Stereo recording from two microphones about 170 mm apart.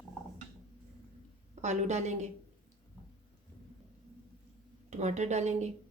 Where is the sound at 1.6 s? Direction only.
45° right (ahead or behind).